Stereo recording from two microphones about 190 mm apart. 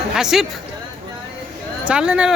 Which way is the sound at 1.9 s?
5° right (ahead or behind).